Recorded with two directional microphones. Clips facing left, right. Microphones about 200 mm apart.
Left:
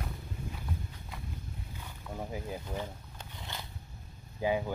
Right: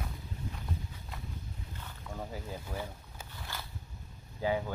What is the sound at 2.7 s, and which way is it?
Speech, 5° right (ahead or behind).